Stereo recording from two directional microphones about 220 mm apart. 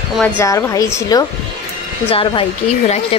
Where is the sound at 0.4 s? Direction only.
15° left (ahead or behind).